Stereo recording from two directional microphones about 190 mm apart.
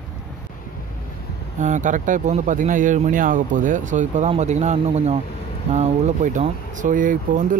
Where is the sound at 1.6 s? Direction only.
40° right (ahead or behind).